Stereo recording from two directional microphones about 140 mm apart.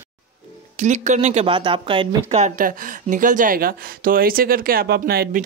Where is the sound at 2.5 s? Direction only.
80° right.